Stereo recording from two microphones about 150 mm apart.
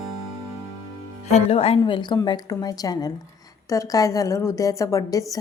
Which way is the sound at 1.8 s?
30° left (ahead or behind).